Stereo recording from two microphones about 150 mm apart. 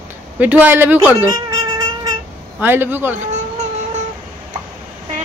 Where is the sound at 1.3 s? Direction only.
30° right (ahead or behind).